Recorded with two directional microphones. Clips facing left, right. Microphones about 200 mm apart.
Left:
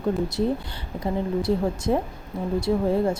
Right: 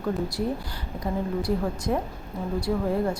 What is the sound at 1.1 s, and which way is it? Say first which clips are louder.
A woman's voice: left 3 dB; 25° left (ahead or behind).